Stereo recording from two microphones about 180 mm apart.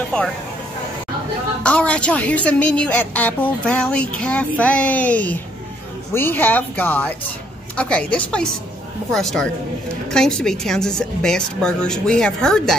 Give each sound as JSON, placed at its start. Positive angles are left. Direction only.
{"t": 0.1, "sound": "a woman's voice", "side_deg": 5}
{"t": 1.6, "sound": "a woman's voice", "side_deg": 5}